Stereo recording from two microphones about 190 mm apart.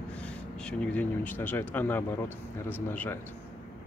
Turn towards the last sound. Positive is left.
turn(degrees=10)  # may be behind; listen again after turning